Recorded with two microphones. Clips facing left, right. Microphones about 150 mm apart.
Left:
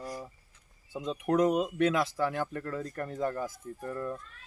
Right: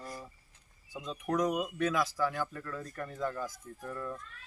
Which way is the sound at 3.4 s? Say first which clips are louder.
Left 4 dB; 25° left (ahead or behind).